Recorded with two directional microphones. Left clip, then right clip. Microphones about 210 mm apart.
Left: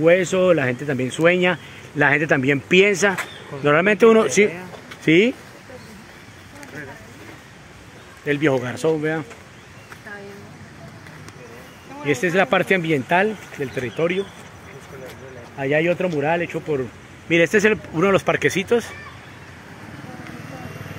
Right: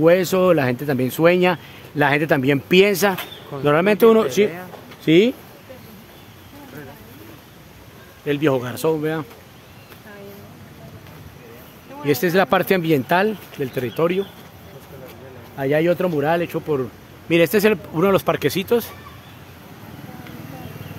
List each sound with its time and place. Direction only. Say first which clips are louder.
0.0 s speech: right 1 dB; 25° right (ahead or behind); by 4.3 s 5° right (ahead or behind)
8.3 s speech: even; 10° right (ahead or behind)
12.0 s speech: right 1 dB; 25° right (ahead or behind)
15.5 s speech: right 1 dB; 25° right (ahead or behind)
17.3 s speech: even; 10° right (ahead or behind)